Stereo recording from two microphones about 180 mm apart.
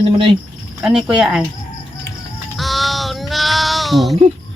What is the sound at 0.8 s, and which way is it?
Speech, 5° right (ahead or behind).